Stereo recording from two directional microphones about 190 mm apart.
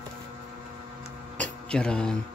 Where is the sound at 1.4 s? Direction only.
5° left (ahead or behind).